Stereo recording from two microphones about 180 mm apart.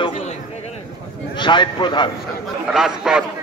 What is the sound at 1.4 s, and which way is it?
Speech, 25° left (ahead or behind).